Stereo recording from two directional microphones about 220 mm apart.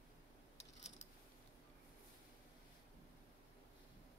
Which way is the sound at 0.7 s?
30° left (ahead or behind).